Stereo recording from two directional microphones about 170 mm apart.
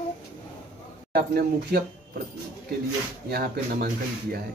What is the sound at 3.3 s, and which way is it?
Speech, 70° right (ahead or behind).